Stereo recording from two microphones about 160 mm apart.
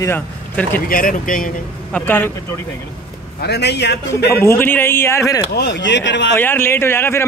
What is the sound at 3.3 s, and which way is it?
Speech, 90° left.